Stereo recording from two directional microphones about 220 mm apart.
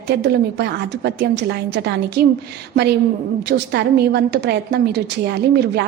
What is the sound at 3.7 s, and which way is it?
A woman's voice, 45° right (ahead or behind).